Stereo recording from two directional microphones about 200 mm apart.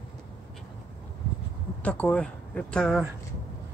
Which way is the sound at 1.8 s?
5° left (ahead or behind).